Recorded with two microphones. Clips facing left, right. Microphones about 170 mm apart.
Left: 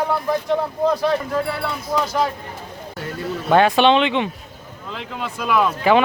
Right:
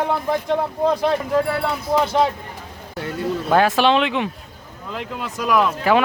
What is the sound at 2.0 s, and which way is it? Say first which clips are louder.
Speech: right 3 dB; 25° right (ahead or behind).